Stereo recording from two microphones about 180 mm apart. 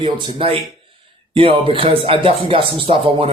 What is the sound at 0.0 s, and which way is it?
Speech, 30° right (ahead or behind).